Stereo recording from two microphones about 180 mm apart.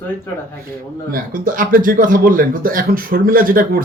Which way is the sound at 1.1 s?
50° right (ahead or behind).